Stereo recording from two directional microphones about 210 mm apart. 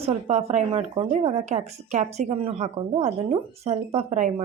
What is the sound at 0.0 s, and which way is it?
A woman's voice, 30° right (ahead or behind).